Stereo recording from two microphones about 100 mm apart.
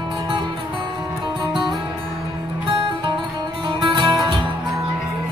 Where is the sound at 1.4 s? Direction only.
50° right (ahead or behind).